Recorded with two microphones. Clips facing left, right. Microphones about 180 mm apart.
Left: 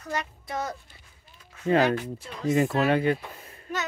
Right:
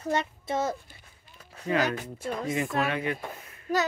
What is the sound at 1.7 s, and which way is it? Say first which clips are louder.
Speech: left 5 dB; 35° left (ahead or behind).